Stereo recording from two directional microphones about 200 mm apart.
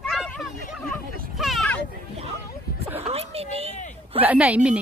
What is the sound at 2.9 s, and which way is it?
Speech, 30° right (ahead or behind).